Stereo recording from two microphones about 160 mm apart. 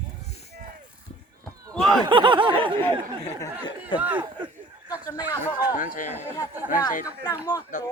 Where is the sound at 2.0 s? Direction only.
30° right (ahead or behind).